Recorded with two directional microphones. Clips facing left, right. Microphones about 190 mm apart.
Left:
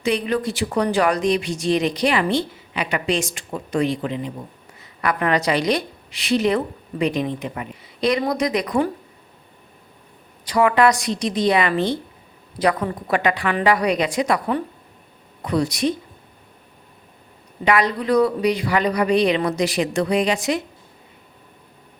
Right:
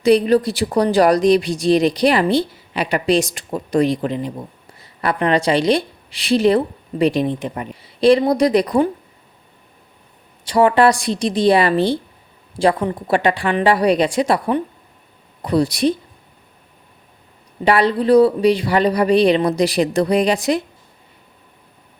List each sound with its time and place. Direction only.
0.0 s a woman's voice: 35° right (ahead or behind)
10.4 s speech: 30° right (ahead or behind)
17.7 s speech: 30° right (ahead or behind)